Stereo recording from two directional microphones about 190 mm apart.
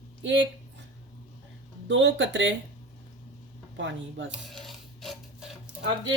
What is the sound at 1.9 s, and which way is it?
Speech, 70° right (ahead or behind).